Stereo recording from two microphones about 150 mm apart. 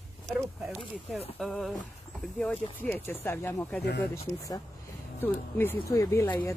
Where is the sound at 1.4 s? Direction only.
Centre (ahead or behind).